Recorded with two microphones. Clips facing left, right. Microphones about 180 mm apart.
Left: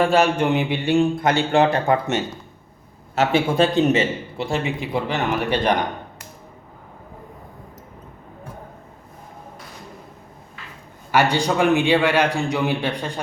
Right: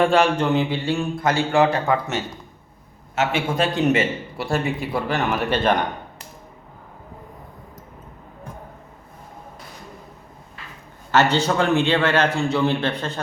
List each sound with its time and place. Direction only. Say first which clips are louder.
0.3 s speech: even; 15° left (ahead or behind)
3.2 s speech: left 4 dB; 30° left (ahead or behind); by 5.7 s 15° left (ahead or behind)
11.1 s speech: even; 10° left (ahead or behind)